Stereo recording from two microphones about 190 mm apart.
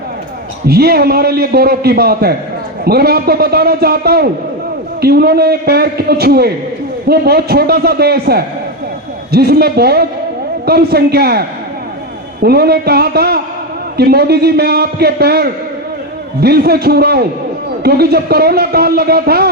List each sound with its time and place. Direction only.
0.7 s a man's voice: 55° right (ahead or behind)